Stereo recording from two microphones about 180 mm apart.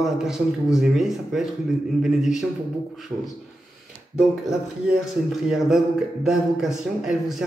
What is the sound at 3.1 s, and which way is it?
Speech, 25° right (ahead or behind).